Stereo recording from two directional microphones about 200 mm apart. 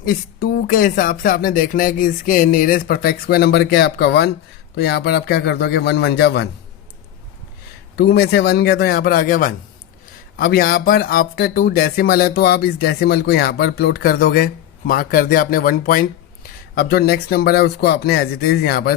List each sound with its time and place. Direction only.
0.0 s speech: 45° left (ahead or behind)
7.9 s speech: 50° left (ahead or behind)